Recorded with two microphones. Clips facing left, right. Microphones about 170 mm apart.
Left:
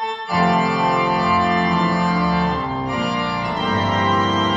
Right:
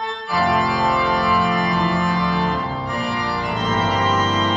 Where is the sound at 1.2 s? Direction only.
35° left (ahead or behind).